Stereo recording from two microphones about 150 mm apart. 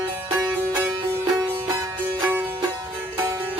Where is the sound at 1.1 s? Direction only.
15° right (ahead or behind).